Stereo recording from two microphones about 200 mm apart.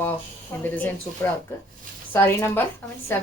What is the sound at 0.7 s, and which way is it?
Speech, 10° left (ahead or behind).